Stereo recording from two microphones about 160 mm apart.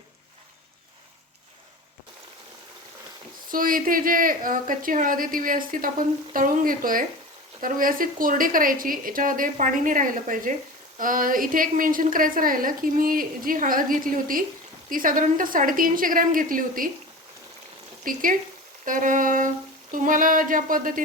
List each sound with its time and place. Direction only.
3.5 s a woman's voice: 60° right (ahead or behind)
18.0 s a woman's voice: 60° right (ahead or behind)